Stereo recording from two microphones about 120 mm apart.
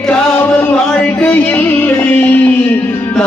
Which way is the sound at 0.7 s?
5° left (ahead or behind).